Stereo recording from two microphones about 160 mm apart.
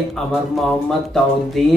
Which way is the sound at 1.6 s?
Centre (ahead or behind).